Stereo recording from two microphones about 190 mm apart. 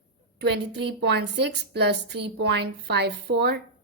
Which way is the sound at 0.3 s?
60° right (ahead or behind).